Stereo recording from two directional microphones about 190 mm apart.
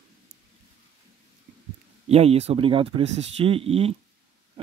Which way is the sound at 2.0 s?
30° right (ahead or behind).